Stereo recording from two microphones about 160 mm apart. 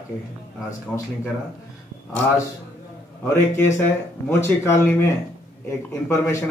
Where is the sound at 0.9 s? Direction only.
5° left (ahead or behind).